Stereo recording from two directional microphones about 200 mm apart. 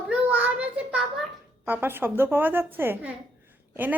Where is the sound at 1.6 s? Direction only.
10° right (ahead or behind).